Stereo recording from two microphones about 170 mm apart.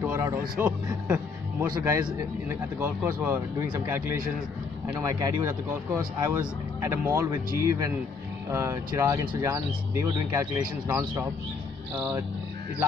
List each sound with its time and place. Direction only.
0.0 s a sound: 15° right (ahead or behind)
1.0 s music: 10° right (ahead or behind)
1.7 s speech: 20° right (ahead or behind)